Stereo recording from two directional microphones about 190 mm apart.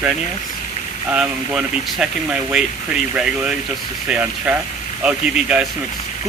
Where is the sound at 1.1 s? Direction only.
5° right (ahead or behind).